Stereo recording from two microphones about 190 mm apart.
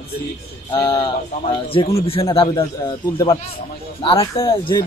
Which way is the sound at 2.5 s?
20° left (ahead or behind).